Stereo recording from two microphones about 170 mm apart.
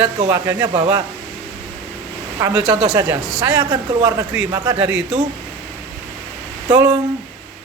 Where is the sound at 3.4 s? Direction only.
25° right (ahead or behind).